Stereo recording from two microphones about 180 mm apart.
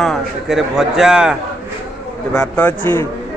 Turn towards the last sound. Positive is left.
turn(degrees=10)  # may be behind; listen again after turning